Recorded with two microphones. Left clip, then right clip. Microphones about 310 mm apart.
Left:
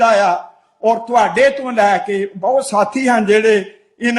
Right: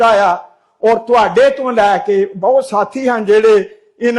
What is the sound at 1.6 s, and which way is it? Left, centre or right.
A man's voice, right.